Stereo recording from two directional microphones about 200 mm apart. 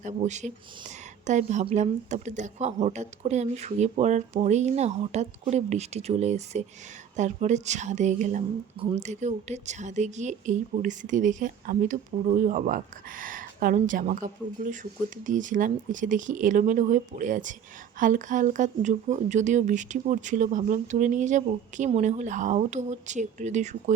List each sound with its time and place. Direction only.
0.0 s speech: 35° right (ahead or behind)